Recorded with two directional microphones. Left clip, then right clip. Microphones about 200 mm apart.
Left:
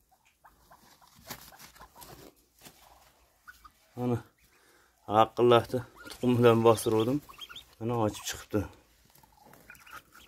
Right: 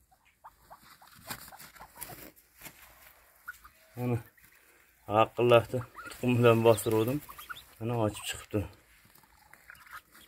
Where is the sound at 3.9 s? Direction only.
10° left (ahead or behind).